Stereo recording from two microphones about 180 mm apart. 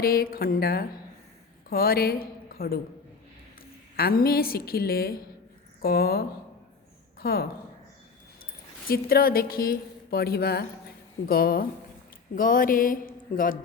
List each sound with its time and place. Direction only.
0.0 s a woman's voice: 55° left (ahead or behind)
3.9 s a woman's voice: 55° left (ahead or behind)
8.9 s a woman's voice: 55° left (ahead or behind)
12.4 s a sound: 50° left (ahead or behind)